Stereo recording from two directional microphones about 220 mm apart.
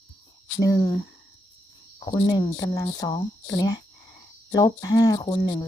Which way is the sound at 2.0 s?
20° left (ahead or behind).